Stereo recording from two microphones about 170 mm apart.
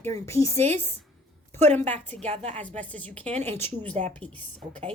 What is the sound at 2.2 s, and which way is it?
Speech, 40° right (ahead or behind).